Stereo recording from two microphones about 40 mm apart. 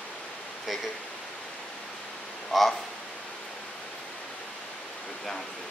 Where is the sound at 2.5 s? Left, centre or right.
Centre.